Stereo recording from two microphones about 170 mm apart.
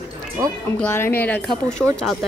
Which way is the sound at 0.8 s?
15° left (ahead or behind).